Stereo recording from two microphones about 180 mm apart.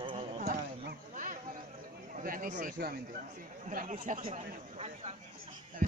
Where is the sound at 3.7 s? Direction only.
45° right (ahead or behind).